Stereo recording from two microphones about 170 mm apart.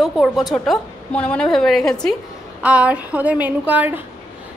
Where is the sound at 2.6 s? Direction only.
10° right (ahead or behind).